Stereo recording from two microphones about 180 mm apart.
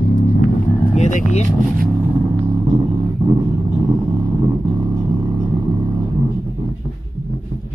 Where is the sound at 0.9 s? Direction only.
40° left (ahead or behind).